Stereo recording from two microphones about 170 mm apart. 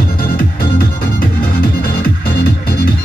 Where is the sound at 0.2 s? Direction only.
60° left (ahead or behind).